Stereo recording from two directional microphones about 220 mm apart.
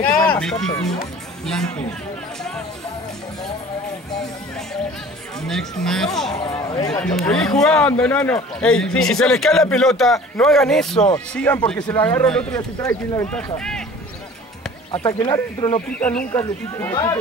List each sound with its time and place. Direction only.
0.1 s speech: 5° left (ahead or behind)
5.4 s speech: centre (ahead or behind)
6.4 s speech: 15° left (ahead or behind)
6.9 s speech: 5° left (ahead or behind)
13.3 s speech: 5° left (ahead or behind)
14.9 s speech: 15° left (ahead or behind)